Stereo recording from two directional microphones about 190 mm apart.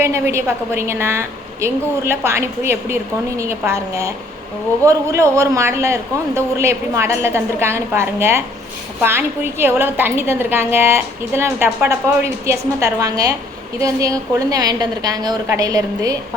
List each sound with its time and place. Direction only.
0.0 s a woman's voice: 15° right (ahead or behind)